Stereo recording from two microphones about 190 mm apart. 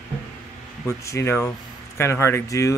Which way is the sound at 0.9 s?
15° left (ahead or behind).